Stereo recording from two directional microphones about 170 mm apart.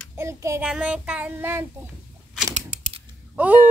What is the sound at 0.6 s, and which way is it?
Child singing, 5° right (ahead or behind).